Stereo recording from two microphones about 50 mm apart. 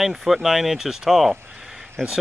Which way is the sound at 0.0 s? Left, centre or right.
Centre.